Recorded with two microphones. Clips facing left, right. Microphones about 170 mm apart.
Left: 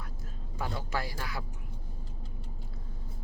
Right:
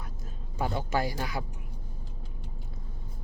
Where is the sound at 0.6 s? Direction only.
25° right (ahead or behind).